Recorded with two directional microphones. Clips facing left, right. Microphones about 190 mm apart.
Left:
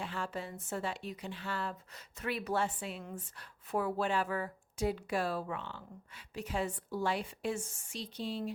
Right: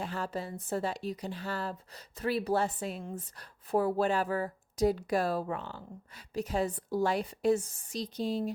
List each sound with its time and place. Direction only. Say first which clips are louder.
0.0 s speech: right 4 dB; 40° right (ahead or behind)